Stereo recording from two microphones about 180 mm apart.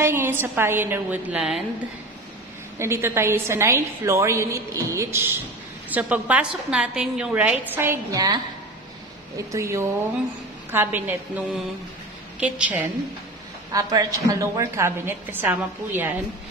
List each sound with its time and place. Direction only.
0.0 s a woman's voice: 10° right (ahead or behind)
2.8 s a woman's voice: 15° right (ahead or behind)
9.5 s a woman's voice: 15° right (ahead or behind)
13.7 s a woman's voice: 20° right (ahead or behind)